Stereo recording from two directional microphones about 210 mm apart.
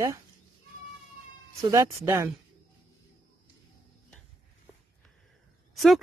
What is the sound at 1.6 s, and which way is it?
Speech, 15° right (ahead or behind).